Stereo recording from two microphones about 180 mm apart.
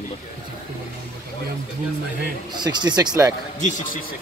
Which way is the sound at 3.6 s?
45° left (ahead or behind).